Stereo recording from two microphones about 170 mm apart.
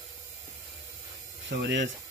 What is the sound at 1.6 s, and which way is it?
Speech, 90° right.